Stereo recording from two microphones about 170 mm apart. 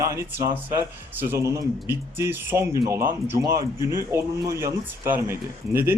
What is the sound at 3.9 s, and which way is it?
Speech, 15° right (ahead or behind).